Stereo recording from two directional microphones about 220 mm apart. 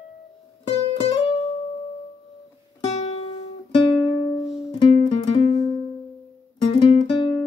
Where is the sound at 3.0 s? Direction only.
25° left (ahead or behind).